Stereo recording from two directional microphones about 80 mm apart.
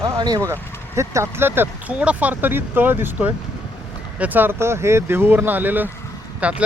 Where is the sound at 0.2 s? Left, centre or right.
Right.